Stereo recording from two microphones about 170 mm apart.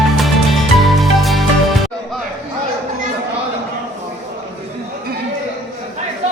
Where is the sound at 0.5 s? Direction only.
Centre (ahead or behind).